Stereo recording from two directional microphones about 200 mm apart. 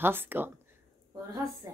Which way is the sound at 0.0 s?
10° right (ahead or behind).